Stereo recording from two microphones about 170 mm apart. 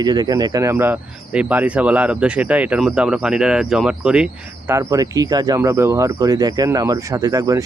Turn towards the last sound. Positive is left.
turn(degrees=-20)  # may be behind; listen again after turning